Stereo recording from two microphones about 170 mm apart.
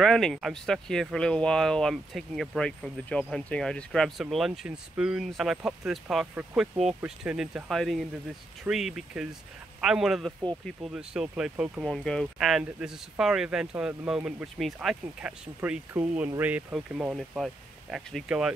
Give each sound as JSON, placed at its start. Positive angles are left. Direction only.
{"t": 0.0, "sound": "speech", "side_deg": 0}
{"t": 11.9, "sound": "speech", "side_deg": 5}